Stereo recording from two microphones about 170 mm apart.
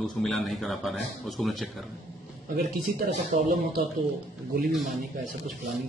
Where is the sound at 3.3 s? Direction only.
45° right (ahead or behind).